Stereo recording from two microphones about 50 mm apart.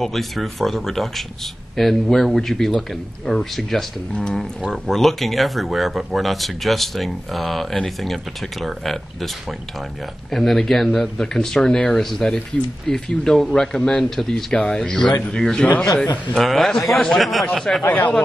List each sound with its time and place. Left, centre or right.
0.0 s speech: centre
4.1 s speech: centre
4.6 s speech: centre
16.4 s speech: centre
17.8 s speech: left